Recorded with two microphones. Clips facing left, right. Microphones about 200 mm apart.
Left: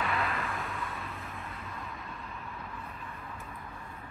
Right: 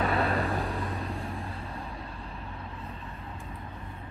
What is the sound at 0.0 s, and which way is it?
Vehicle, 35° right (ahead or behind).